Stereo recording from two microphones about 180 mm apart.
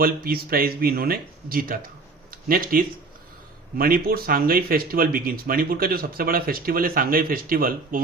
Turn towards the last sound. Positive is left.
turn(degrees=-55)  # may be behind; listen again after turning